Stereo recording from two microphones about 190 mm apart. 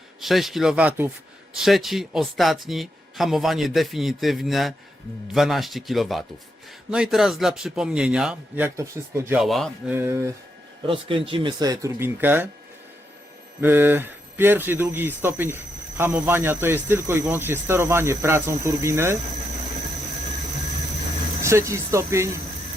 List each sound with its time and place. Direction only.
0.2 s speech: centre (ahead or behind)
9.4 s speech: centre (ahead or behind)
9.9 s speech: 15° right (ahead or behind)
10.8 s speech: 30° right (ahead or behind); by 12.5 s 10° right (ahead or behind)
13.6 s speech: 10° right (ahead or behind)
21.4 s speech: 15° right (ahead or behind)